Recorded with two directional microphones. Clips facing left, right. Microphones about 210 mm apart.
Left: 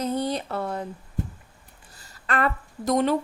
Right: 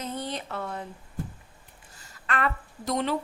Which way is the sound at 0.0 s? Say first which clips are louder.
Left 7 dB; 35° left (ahead or behind).